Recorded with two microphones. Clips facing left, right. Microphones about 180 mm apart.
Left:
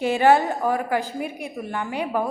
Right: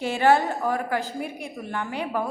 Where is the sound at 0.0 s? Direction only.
15° left (ahead or behind).